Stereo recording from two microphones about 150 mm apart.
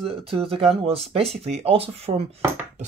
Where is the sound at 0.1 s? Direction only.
40° right (ahead or behind).